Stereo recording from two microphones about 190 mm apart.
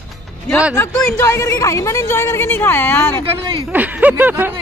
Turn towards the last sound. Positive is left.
turn(degrees=-10)  # may be behind; listen again after turning